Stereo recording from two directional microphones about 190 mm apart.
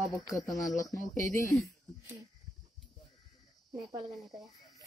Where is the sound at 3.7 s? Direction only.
20° right (ahead or behind).